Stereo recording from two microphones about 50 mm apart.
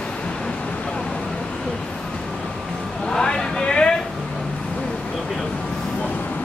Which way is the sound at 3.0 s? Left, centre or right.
Centre.